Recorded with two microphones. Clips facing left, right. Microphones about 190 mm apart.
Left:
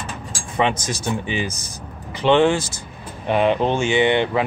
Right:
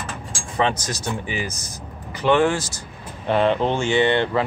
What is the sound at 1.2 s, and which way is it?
Speech, 25° left (ahead or behind).